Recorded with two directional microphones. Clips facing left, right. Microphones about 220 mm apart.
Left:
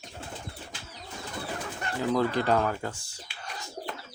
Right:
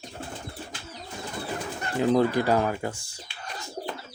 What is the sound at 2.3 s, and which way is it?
Speech, 10° right (ahead or behind).